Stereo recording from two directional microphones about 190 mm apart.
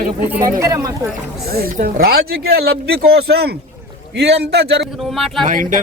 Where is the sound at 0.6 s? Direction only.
20° right (ahead or behind).